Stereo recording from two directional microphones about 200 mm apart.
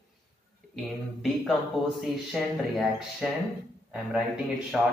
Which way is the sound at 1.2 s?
Centre (ahead or behind).